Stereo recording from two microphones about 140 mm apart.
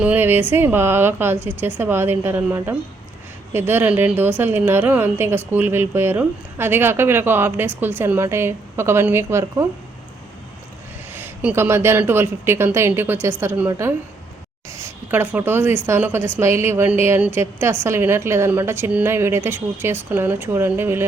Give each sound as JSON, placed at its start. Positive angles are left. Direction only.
{"t": 0.0, "sound": "a woman's voice", "side_deg": -15}
{"t": 11.1, "sound": "a woman's voice", "side_deg": -15}